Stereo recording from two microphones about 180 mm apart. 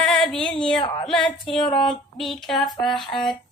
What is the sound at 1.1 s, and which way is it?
Music, 5° left (ahead or behind).